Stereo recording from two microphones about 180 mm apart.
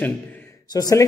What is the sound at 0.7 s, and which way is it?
Speech, 20° left (ahead or behind).